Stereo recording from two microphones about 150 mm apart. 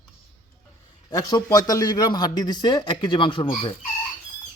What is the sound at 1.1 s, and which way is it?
A man's voice, 25° left (ahead or behind).